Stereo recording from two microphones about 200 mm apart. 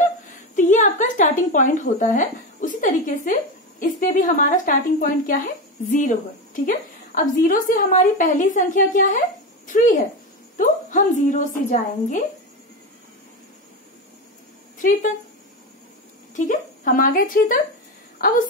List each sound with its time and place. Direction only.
0.6 s a woman's voice: 40° left (ahead or behind)
14.8 s speech: 40° left (ahead or behind)
16.3 s speech: 40° left (ahead or behind)